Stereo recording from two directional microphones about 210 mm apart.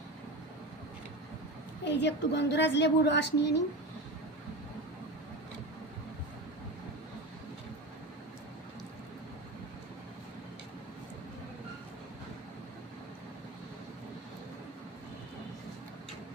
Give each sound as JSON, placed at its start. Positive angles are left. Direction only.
{"t": 1.8, "sound": "a woman's voice", "side_deg": 55}